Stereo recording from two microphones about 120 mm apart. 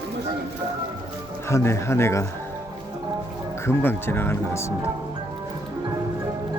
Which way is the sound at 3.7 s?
20° left (ahead or behind).